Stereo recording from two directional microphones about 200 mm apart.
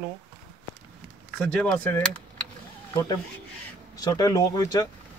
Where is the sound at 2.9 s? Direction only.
20° left (ahead or behind).